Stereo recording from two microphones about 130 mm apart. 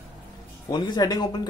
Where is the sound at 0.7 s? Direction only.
35° left (ahead or behind).